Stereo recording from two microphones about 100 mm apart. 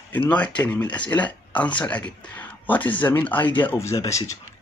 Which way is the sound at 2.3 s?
15° left (ahead or behind).